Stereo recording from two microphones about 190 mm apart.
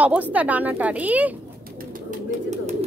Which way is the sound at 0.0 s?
10° right (ahead or behind).